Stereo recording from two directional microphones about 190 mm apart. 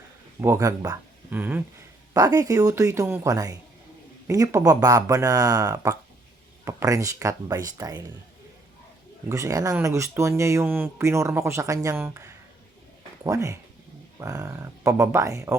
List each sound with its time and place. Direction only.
0.4 s speech: 15° right (ahead or behind)
9.3 s speech: 15° right (ahead or behind)